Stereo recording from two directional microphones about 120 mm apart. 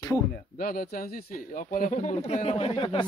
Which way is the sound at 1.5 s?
90° left.